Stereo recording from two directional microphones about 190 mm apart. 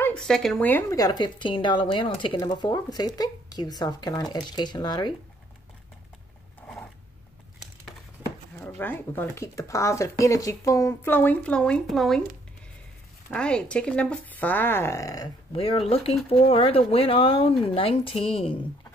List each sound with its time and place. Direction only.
0.0 s speech: 5° left (ahead or behind); by 5.1 s 20° left (ahead or behind)
8.5 s speech: 10° left (ahead or behind)
13.3 s speech: 5° left (ahead or behind)
15.5 s speech: 30° left (ahead or behind)